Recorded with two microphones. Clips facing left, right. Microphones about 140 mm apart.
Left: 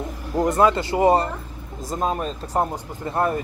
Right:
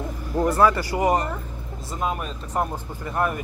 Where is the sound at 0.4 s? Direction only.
20° left (ahead or behind).